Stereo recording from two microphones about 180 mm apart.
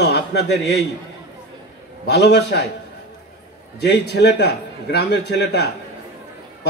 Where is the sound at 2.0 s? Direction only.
70° left (ahead or behind).